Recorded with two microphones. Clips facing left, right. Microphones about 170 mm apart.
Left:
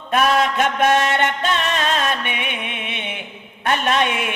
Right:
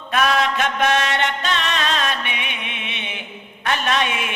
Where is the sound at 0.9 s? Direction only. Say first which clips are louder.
Left 3 dB; 50° left (ahead or behind).